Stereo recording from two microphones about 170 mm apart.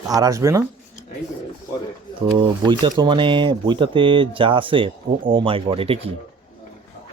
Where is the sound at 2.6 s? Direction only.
25° right (ahead or behind).